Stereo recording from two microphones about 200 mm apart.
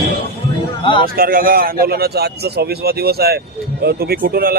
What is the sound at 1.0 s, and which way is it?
A man's voice, 45° right (ahead or behind).